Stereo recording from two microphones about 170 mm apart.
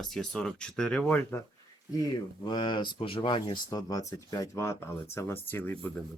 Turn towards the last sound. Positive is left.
turn(degrees=10)  # may be behind; listen again after turning